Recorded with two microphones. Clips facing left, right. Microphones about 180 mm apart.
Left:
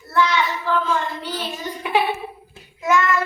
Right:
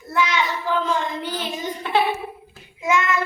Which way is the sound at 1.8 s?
10° left (ahead or behind).